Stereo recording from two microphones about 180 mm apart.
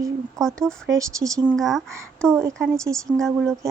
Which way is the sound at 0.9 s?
15° right (ahead or behind).